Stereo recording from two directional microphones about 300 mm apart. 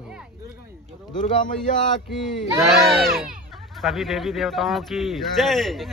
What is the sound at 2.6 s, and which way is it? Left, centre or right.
A man's voice, centre.